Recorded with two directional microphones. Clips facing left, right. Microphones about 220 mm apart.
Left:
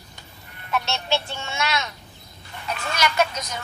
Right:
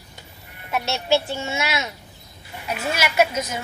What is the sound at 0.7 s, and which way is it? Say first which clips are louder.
Speech: right 4 dB; 10° right (ahead or behind).